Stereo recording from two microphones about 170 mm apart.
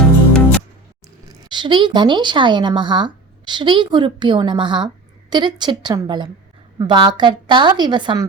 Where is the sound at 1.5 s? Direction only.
25° right (ahead or behind).